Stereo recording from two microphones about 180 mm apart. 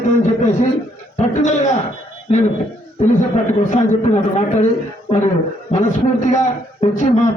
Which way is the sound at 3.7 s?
40° left (ahead or behind).